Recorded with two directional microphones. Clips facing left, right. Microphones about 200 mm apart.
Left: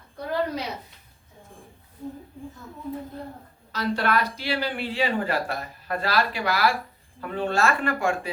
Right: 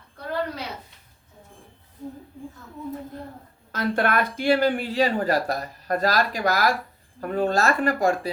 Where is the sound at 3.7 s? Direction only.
50° right (ahead or behind).